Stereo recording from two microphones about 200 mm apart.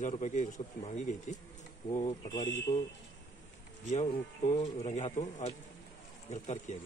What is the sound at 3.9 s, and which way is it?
Speech, 35° left (ahead or behind).